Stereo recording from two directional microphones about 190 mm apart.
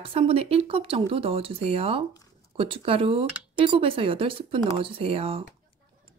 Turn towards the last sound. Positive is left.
turn(degrees=-30)  # may be behind; listen again after turning